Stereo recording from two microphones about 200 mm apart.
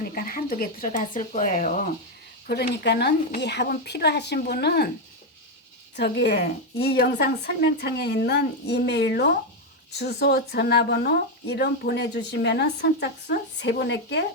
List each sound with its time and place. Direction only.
0.0 s a woman's voice: 45° left (ahead or behind)
2.5 s speech: 55° left (ahead or behind)
6.0 s a woman's voice: 55° left (ahead or behind)